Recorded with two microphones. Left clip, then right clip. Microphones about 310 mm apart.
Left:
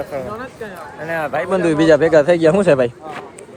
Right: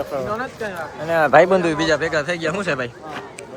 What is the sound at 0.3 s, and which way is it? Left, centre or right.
Speech, right.